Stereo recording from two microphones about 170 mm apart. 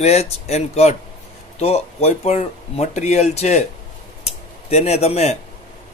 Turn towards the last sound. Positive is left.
turn(degrees=40)  # may be behind; listen again after turning